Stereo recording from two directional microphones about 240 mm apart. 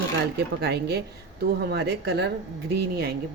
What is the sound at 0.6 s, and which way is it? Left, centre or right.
A woman's voice, right.